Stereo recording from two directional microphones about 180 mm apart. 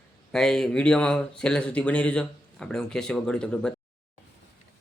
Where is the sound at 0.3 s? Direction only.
Centre (ahead or behind).